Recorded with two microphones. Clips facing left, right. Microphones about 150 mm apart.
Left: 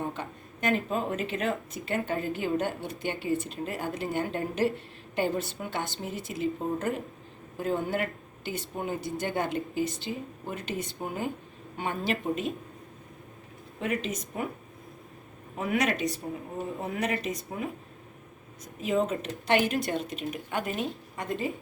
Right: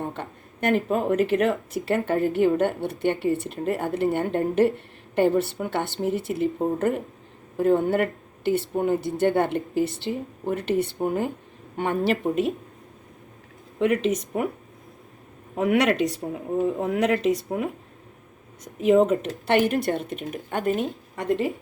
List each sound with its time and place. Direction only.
0.1 s a woman's voice: 60° right (ahead or behind)
13.7 s speech: 85° right
15.5 s speech: 75° right (ahead or behind); by 20.8 s 45° right (ahead or behind)
21.2 s speech: 75° right (ahead or behind)